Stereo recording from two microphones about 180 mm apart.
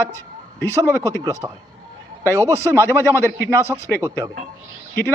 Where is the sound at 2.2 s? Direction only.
15° left (ahead or behind).